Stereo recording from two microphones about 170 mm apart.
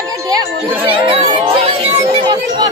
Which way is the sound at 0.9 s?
30° right (ahead or behind).